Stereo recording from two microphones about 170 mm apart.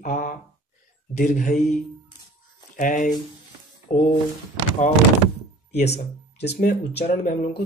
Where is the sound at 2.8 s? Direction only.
50° left (ahead or behind).